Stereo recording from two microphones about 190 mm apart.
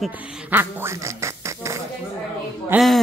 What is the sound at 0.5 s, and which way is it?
Quack, 15° right (ahead or behind).